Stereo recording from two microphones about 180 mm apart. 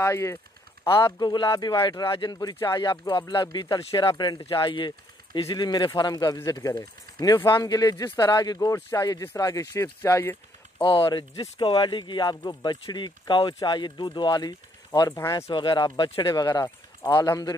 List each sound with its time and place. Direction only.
0.0 s a man's voice: 15° left (ahead or behind)
10.8 s a man's voice: 30° left (ahead or behind)